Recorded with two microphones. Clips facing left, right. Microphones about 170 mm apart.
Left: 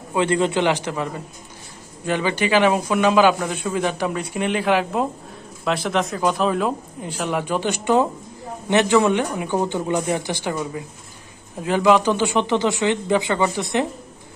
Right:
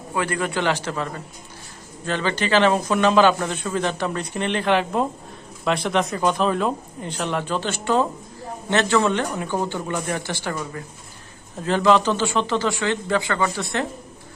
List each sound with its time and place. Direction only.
0.1 s speech: 20° left (ahead or behind)